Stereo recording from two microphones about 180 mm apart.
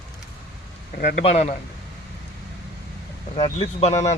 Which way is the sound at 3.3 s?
35° left (ahead or behind).